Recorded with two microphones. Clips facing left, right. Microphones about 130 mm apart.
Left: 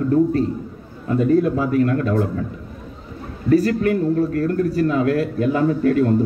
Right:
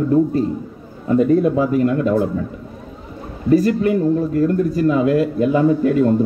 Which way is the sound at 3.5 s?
20° right (ahead or behind).